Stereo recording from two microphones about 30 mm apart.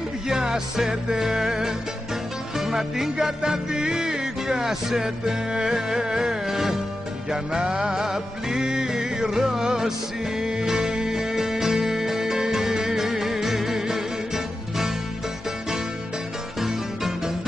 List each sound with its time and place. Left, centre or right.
0.3 s music: centre
7.2 s music: right
7.9 s music: centre